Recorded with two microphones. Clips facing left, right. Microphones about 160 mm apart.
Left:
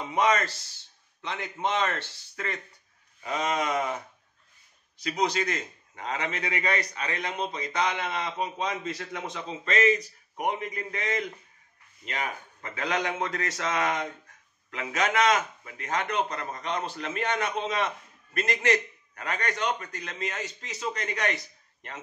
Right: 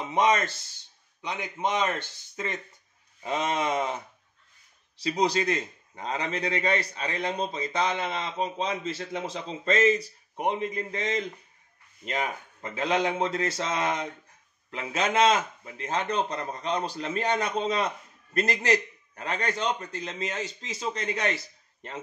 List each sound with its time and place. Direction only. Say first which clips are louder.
0.0 s a man's voice: right 1 dB; 20° right (ahead or behind)
4.9 s a man's voice: right 2 dB; 30° right (ahead or behind)